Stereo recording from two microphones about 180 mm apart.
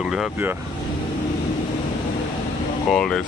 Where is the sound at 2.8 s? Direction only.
5° left (ahead or behind).